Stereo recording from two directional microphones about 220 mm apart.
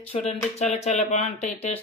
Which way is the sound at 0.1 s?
30° left (ahead or behind).